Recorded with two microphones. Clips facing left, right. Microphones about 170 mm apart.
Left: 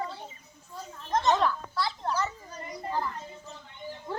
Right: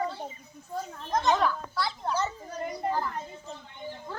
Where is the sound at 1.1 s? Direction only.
Centre (ahead or behind).